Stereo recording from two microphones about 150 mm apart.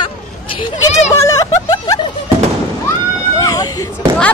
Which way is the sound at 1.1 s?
20° left (ahead or behind).